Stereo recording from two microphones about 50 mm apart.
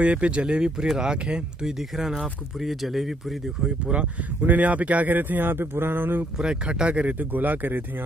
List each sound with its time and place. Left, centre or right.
0.0 s speech: right
2.0 s speech: centre
3.6 s speech: right
4.4 s speech: right
6.3 s speech: centre; by 7.8 s right